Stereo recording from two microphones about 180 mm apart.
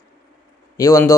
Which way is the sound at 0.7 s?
15° left (ahead or behind).